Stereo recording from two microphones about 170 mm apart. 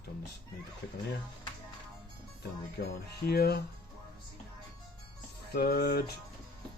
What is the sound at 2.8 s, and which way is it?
Speech, 70° left (ahead or behind).